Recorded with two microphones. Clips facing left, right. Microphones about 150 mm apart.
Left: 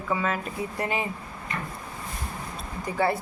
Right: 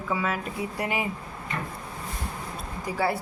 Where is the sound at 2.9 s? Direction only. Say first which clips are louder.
Left 1 dB; 10° right (ahead or behind).